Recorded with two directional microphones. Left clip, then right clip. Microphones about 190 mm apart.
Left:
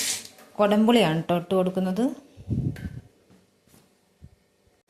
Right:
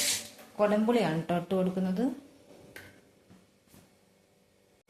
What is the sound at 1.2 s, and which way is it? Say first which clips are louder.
Speech: left 6 dB; 30° left (ahead or behind).